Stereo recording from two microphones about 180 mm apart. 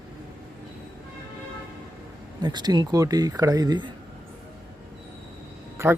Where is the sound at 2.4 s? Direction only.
20° right (ahead or behind).